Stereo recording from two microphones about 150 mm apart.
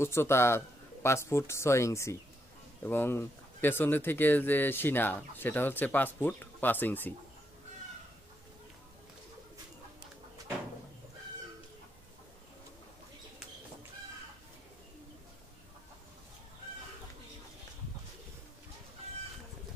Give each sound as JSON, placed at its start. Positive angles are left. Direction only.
{"t": 0.0, "sound": "speech", "side_deg": 15}